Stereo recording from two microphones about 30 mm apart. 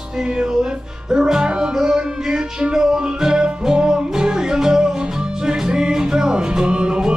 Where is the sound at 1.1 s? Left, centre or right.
Right.